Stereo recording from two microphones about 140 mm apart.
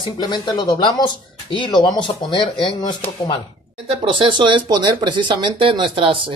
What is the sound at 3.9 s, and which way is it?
Speech, 40° right (ahead or behind).